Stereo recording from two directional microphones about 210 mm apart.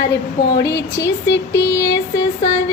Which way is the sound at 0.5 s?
15° left (ahead or behind).